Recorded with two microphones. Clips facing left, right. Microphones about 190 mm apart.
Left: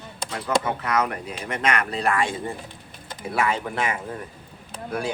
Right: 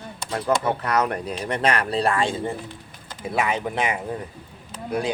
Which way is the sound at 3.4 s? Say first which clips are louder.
Right 1 dB; 20° right (ahead or behind).